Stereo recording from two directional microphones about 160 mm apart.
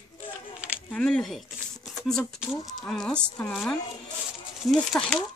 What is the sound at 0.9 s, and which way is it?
Speech, 5° left (ahead or behind).